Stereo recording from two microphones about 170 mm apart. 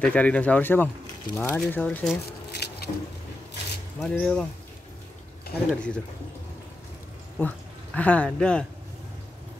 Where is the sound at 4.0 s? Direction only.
5° left (ahead or behind).